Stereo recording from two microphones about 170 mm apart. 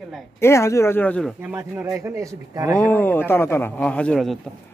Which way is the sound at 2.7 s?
10° left (ahead or behind).